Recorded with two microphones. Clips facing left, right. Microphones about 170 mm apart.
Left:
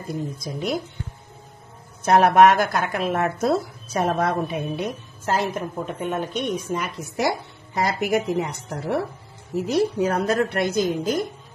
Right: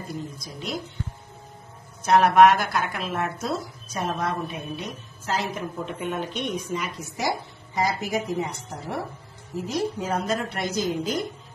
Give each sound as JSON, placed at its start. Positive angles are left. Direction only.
{"t": 0.1, "sound": "a woman's voice", "side_deg": 55}
{"t": 2.0, "sound": "a woman's voice", "side_deg": 50}
{"t": 6.7, "sound": "a woman's voice", "side_deg": 55}